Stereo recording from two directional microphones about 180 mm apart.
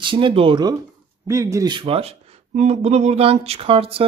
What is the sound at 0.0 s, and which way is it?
Speech, 30° right (ahead or behind).